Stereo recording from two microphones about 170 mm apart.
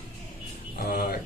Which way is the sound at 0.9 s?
60° left (ahead or behind).